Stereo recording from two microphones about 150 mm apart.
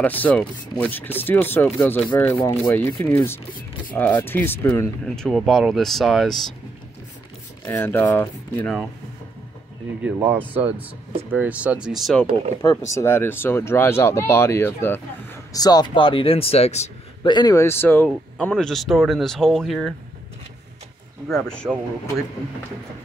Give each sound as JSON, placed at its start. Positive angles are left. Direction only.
{"t": 0.0, "sound": "speech", "side_deg": 10}
{"t": 7.6, "sound": "speech", "side_deg": 15}
{"t": 10.0, "sound": "speech", "side_deg": -10}
{"t": 12.9, "sound": "speech", "side_deg": 15}
{"t": 15.6, "sound": "speech", "side_deg": 25}
{"t": 17.2, "sound": "a man's voice", "side_deg": 30}
{"t": 17.6, "sound": "speech", "side_deg": 15}
{"t": 21.3, "sound": "speech", "side_deg": 5}